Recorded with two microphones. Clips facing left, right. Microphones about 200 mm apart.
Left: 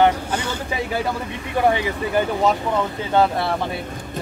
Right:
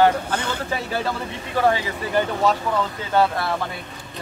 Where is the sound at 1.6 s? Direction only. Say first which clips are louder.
Left 1 dB; 20° left (ahead or behind).